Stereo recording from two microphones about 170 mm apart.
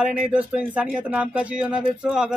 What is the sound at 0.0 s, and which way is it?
Speech, 5° right (ahead or behind).